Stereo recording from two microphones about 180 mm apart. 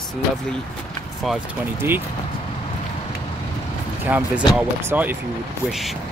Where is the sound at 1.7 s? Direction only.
10° right (ahead or behind).